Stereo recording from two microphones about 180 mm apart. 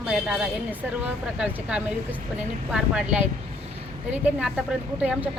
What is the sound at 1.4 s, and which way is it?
A woman's voice, 5° right (ahead or behind).